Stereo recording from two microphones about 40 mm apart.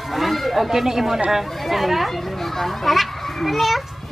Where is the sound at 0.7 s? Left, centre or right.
Centre.